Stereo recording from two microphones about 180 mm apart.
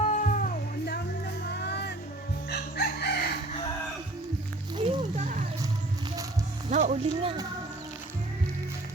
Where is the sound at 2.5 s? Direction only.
65° left (ahead or behind).